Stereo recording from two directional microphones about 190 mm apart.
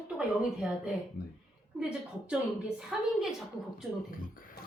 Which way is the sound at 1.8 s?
5° right (ahead or behind).